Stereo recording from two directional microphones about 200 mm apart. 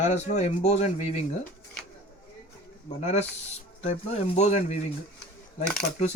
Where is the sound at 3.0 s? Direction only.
35° left (ahead or behind).